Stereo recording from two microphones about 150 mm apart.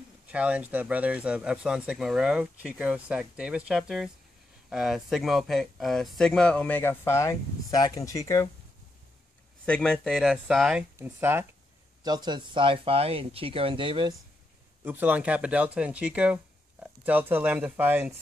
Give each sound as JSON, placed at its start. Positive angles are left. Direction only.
{"t": 0.3, "sound": "speech", "side_deg": -10}
{"t": 9.7, "sound": "speech", "side_deg": 5}
{"t": 11.0, "sound": "speech", "side_deg": -15}
{"t": 12.0, "sound": "speech", "side_deg": -30}
{"t": 14.9, "sound": "speech", "side_deg": -10}